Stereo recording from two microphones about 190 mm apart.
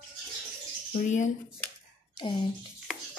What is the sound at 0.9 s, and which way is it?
Speech, 40° left (ahead or behind).